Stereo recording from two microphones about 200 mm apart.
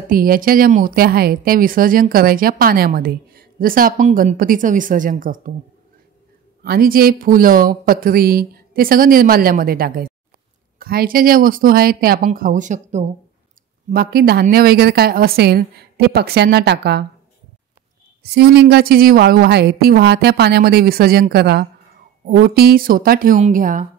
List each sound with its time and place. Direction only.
0.1 s speech: 45° right (ahead or behind)
6.6 s speech: 50° right (ahead or behind)
13.8 s speech: 50° right (ahead or behind)
18.2 s speech: 55° right (ahead or behind)